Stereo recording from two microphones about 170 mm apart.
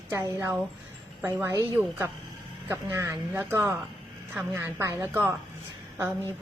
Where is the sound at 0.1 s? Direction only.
15° right (ahead or behind).